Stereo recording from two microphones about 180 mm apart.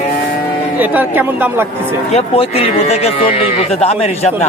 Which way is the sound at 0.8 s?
10° right (ahead or behind).